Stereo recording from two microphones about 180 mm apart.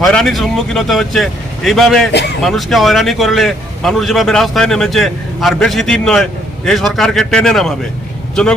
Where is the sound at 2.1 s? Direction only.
70° left (ahead or behind).